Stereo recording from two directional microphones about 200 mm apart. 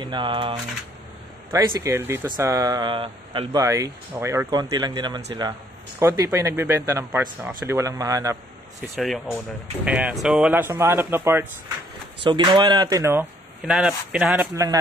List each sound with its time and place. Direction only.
0.0 s speech: 25° right (ahead or behind)
8.8 s speech: centre (ahead or behind)
12.2 s speech: 25° right (ahead or behind)